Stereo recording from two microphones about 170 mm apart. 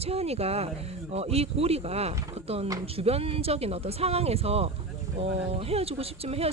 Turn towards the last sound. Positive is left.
turn(degrees=-35)  # may be behind; listen again after turning